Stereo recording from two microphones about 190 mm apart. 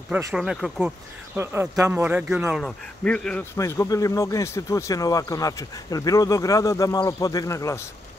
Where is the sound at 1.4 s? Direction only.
15° right (ahead or behind); by 7.9 s 15° left (ahead or behind).